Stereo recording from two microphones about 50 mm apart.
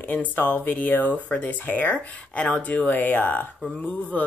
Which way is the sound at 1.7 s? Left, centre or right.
Left.